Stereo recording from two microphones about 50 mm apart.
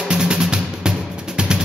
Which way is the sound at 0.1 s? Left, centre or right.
Centre.